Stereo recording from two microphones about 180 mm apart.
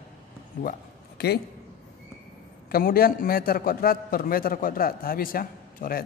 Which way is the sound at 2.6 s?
55° left (ahead or behind).